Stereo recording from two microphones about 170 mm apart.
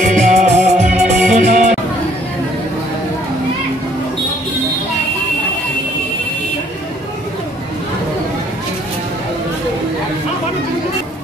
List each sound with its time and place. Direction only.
0.0 s music: 45° right (ahead or behind)